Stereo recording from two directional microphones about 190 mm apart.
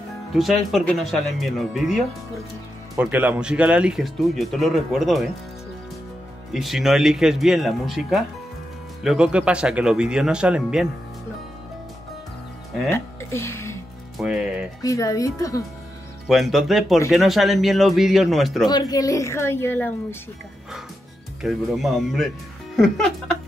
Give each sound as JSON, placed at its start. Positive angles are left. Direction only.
{"t": 0.3, "sound": "speech", "side_deg": 0}
{"t": 3.0, "sound": "speech", "side_deg": -10}
{"t": 6.5, "sound": "speech", "side_deg": 0}
{"t": 12.9, "sound": "music", "side_deg": 15}
{"t": 14.1, "sound": "speech", "side_deg": -5}
{"t": 14.8, "sound": "a woman's voice", "side_deg": 15}
{"t": 16.3, "sound": "speech", "side_deg": 0}
{"t": 18.7, "sound": "a woman's voice", "side_deg": 20}
{"t": 21.4, "sound": "speech", "side_deg": 0}